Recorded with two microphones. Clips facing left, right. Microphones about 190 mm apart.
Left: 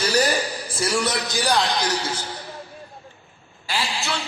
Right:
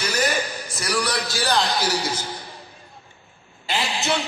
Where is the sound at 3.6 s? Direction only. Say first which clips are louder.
Right 3 dB; 20° right (ahead or behind).